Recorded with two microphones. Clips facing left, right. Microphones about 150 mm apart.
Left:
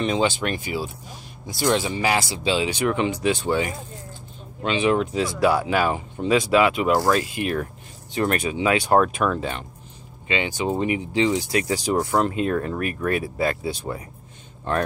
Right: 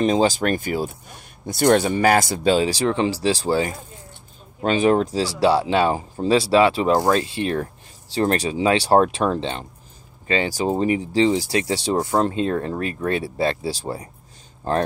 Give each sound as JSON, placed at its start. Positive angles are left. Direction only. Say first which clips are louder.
{"t": 0.0, "sound": "speech", "louder": "right 4 dB", "side_deg": -40}